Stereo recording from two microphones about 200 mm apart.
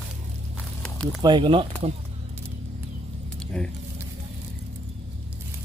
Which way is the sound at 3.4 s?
5° left (ahead or behind).